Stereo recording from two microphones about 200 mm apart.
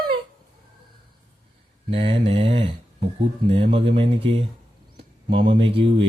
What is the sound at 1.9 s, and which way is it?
Speech, 25° right (ahead or behind).